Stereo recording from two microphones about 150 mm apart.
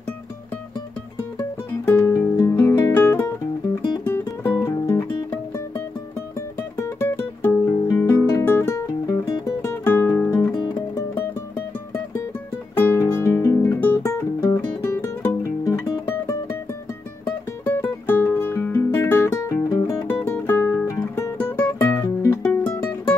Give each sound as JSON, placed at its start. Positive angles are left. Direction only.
{"t": 1.9, "sound": "music", "side_deg": 15}
{"t": 6.8, "sound": "music", "side_deg": 15}
{"t": 12.7, "sound": "guitar", "side_deg": 15}
{"t": 18.0, "sound": "music", "side_deg": 15}